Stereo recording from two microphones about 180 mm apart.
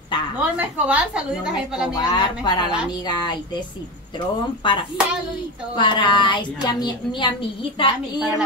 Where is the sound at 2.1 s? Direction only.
25° left (ahead or behind).